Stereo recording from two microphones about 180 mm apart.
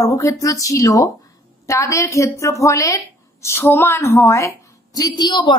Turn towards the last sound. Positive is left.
turn(degrees=25)  # may be behind; listen again after turning